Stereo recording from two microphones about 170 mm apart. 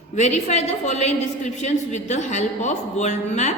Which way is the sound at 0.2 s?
40° left (ahead or behind).